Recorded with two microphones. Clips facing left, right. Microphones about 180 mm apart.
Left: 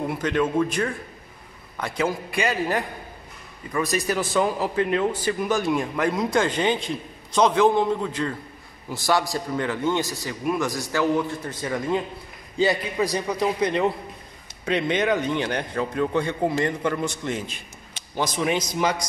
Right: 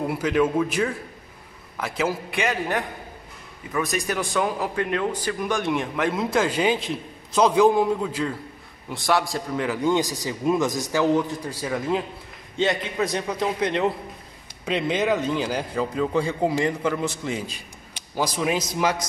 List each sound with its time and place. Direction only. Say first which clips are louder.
0.0 s a man's voice: right 2 dB; 10° right (ahead or behind)
9.8 s a man's voice: right 2 dB; 15° right (ahead or behind)